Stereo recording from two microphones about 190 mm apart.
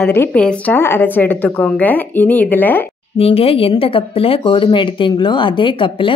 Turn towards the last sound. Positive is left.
turn(degrees=25)  # may be behind; listen again after turning